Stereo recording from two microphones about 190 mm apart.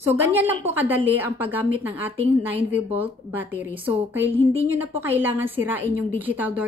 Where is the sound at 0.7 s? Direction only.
10° right (ahead or behind).